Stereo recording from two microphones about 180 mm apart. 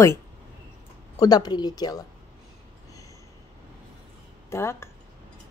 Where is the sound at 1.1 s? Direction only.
20° left (ahead or behind).